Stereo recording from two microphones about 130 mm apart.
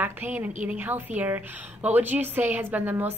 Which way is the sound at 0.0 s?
15° right (ahead or behind).